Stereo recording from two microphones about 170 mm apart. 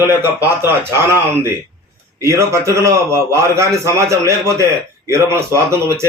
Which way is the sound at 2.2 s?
15° right (ahead or behind).